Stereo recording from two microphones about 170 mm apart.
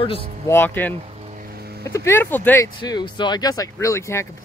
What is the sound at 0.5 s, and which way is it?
Speech, 10° left (ahead or behind).